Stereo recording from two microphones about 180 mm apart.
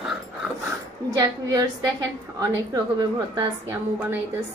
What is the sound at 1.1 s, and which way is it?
A woman's voice, 20° right (ahead or behind).